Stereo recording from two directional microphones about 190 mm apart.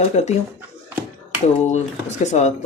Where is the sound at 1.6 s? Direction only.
35° left (ahead or behind).